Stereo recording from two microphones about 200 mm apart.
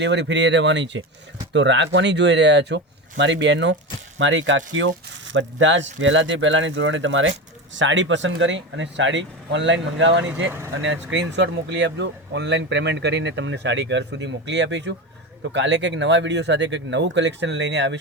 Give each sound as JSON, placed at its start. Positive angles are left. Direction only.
{"t": 0.0, "sound": "speech", "side_deg": -60}